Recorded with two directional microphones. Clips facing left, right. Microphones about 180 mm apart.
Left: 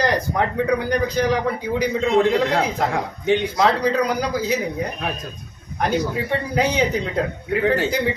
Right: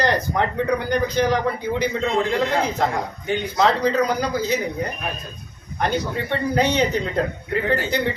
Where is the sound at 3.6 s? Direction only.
5° left (ahead or behind).